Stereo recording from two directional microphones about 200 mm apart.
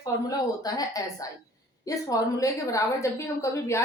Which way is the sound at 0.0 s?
20° left (ahead or behind).